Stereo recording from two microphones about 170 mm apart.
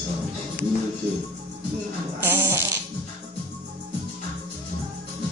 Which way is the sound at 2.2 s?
15° right (ahead or behind).